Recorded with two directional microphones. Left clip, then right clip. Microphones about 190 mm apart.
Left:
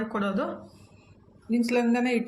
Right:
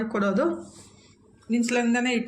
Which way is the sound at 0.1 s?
20° right (ahead or behind).